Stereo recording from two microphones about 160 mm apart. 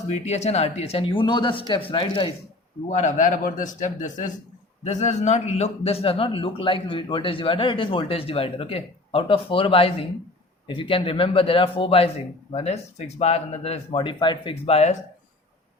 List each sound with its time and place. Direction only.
0.1 s a man's voice: 45° left (ahead or behind)
2.9 s a man's voice: 50° left (ahead or behind)